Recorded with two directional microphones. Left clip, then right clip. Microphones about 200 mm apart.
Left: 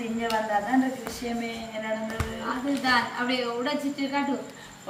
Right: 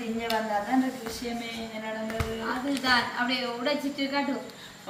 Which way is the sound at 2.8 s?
10° left (ahead or behind).